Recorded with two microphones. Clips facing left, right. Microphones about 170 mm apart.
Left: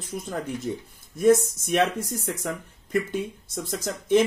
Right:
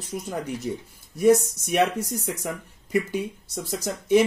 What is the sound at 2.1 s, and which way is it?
A man's voice, 5° right (ahead or behind).